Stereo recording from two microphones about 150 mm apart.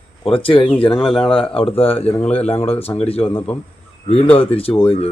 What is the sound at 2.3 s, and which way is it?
Speech, 40° left (ahead or behind).